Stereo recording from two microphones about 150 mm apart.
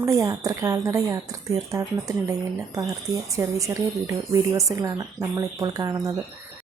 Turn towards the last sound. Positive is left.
turn(degrees=-25)  # may be behind; listen again after turning